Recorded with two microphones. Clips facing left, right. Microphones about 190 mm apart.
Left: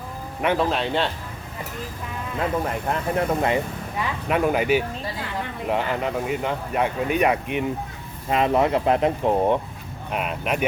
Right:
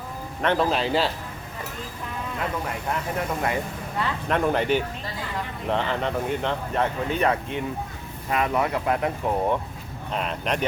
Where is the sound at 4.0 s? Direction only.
10° left (ahead or behind).